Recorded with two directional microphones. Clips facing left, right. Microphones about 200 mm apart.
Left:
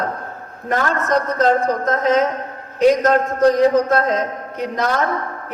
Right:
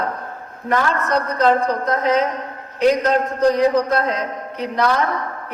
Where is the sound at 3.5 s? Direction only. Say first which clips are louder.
Left 2 dB; 45° left (ahead or behind).